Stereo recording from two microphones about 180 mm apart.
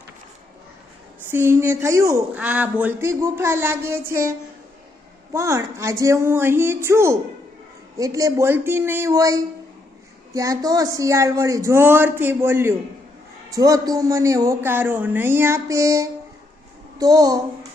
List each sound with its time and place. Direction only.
1.3 s a man's voice: 15° right (ahead or behind)